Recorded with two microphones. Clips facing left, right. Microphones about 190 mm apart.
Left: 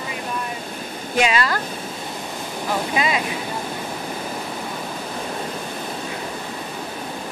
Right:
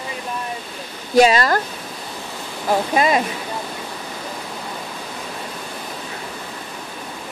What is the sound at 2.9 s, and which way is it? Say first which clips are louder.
Speech: right 5 dB; 45° right (ahead or behind).